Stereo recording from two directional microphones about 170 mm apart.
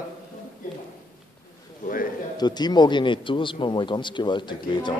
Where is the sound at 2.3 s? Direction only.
25° left (ahead or behind).